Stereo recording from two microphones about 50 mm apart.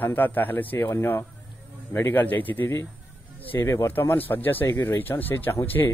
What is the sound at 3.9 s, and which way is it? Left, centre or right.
A man's voice, left.